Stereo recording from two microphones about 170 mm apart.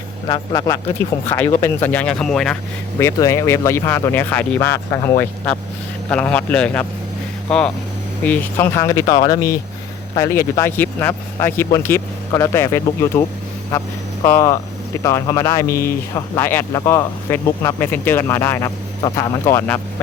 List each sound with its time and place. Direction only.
0.3 s speech: 25° left (ahead or behind); by 2.6 s 5° left (ahead or behind)
3.0 s speech: 20° left (ahead or behind)
6.1 s speech: 10° left (ahead or behind)
14.3 s speech: 15° left (ahead or behind)